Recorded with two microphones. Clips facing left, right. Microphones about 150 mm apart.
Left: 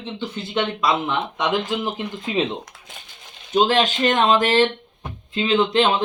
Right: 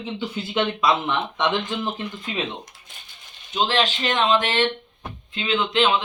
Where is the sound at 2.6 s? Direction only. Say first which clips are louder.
Left 6 dB; 85° left.